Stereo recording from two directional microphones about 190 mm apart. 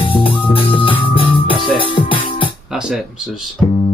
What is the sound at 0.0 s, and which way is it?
Music, 30° left (ahead or behind).